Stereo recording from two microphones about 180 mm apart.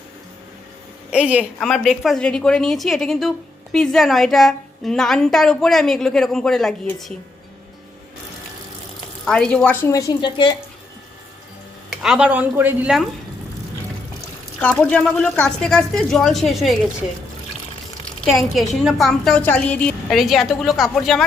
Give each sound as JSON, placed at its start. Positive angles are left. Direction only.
{"t": 1.1, "sound": "a woman's voice", "side_deg": -5}
{"t": 9.2, "sound": "a woman's voice", "side_deg": 5}
{"t": 9.9, "sound": "a woman's voice", "side_deg": 20}
{"t": 11.9, "sound": "a woman's voice", "side_deg": -5}
{"t": 14.6, "sound": "a woman's voice", "side_deg": 5}
{"t": 18.5, "sound": "a woman's voice", "side_deg": 0}